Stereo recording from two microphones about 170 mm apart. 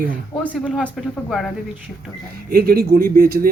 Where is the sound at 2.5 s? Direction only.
65° right (ahead or behind).